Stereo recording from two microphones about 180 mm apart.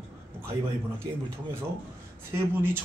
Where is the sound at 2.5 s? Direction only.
10° right (ahead or behind).